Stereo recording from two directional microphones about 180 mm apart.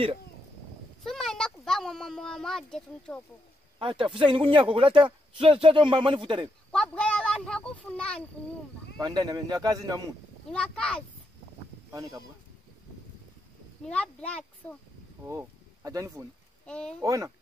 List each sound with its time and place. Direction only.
1.0 s speech: centre (ahead or behind)
3.8 s speech: 30° right (ahead or behind)
6.7 s speech: 5° left (ahead or behind)
9.0 s speech: 20° right (ahead or behind)
10.5 s speech: 5° left (ahead or behind)
11.9 s speech: 20° right (ahead or behind)
13.8 s speech: 5° left (ahead or behind)
15.2 s speech: 15° right (ahead or behind)
16.6 s speech: 5° left (ahead or behind)
17.0 s speech: 20° right (ahead or behind)